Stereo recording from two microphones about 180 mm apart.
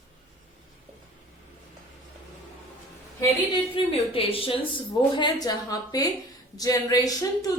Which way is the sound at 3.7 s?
30° left (ahead or behind).